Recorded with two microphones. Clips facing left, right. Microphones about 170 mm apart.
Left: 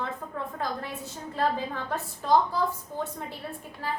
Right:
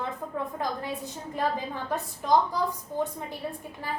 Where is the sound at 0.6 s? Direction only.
15° right (ahead or behind).